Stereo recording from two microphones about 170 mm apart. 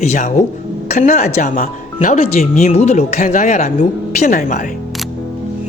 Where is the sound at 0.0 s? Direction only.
45° left (ahead or behind).